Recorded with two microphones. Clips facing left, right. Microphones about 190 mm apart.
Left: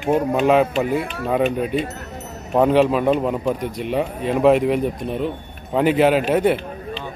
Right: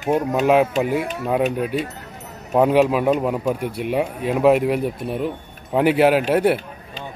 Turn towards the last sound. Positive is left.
turn(degrees=-10)  # may be behind; listen again after turning